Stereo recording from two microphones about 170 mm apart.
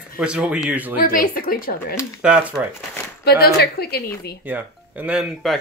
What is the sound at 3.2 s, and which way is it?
A woman's voice, 70° left (ahead or behind).